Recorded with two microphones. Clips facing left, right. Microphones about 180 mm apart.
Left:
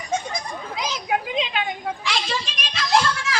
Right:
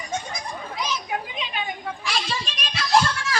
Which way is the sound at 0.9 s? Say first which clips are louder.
Left 7 dB; 90° left.